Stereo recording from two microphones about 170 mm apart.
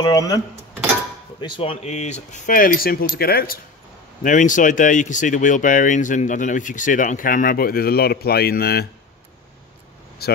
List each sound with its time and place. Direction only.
0.0 s speech: 20° left (ahead or behind)
1.4 s speech: 35° left (ahead or behind); by 3.5 s 65° left (ahead or behind)
4.2 s speech: 50° left (ahead or behind); by 8.8 s 65° left (ahead or behind)
10.2 s speech: 65° left (ahead or behind)